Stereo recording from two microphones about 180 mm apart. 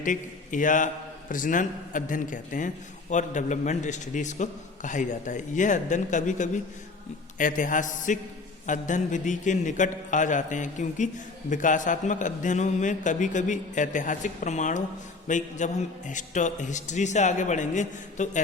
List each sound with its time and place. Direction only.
0.0 s a man's voice: 45° left (ahead or behind)